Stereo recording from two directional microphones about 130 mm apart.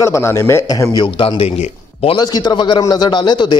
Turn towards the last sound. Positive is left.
turn(degrees=35)  # may be behind; listen again after turning